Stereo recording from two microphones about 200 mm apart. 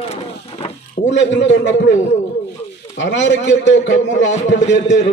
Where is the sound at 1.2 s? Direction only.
65° left (ahead or behind).